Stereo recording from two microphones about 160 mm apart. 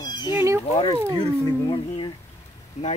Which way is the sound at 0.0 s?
25° left (ahead or behind).